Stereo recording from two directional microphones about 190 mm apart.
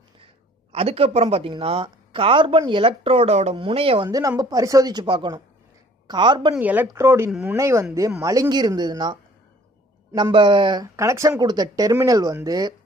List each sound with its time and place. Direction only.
0.7 s speech: 30° right (ahead or behind)
6.5 s speech: 10° right (ahead or behind)
7.2 s speech: centre (ahead or behind)
7.5 s speech: 15° right (ahead or behind)